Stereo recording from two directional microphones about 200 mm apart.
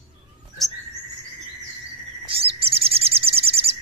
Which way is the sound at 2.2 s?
30° right (ahead or behind).